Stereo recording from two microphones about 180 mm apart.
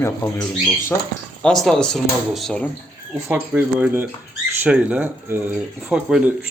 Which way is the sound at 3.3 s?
10° right (ahead or behind).